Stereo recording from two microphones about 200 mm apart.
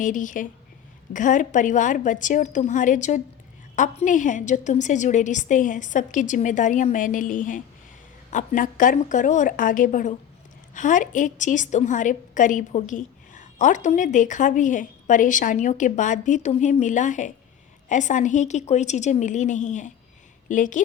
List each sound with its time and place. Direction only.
0.0 s a woman's voice: 40° left (ahead or behind)